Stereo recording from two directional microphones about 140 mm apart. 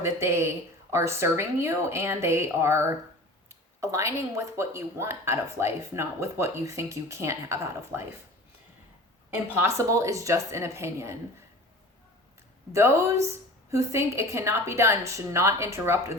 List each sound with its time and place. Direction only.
0.0 s a woman's voice: 20° right (ahead or behind)
9.3 s a woman's voice: 20° right (ahead or behind)
12.7 s a woman's voice: 20° right (ahead or behind)